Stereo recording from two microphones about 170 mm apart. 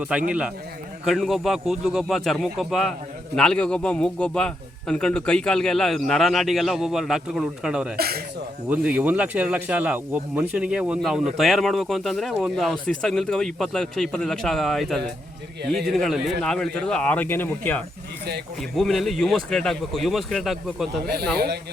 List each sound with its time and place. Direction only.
0.3 s speech: 5° right (ahead or behind)
7.9 s speech: 65° right (ahead or behind)
9.0 s speech: 10° right (ahead or behind)
21.0 s speech: 70° right (ahead or behind)